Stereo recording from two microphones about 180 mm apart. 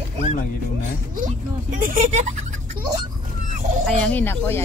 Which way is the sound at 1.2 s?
45° right (ahead or behind).